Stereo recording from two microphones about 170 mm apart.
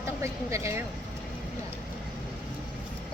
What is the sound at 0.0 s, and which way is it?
Speech, 15° right (ahead or behind).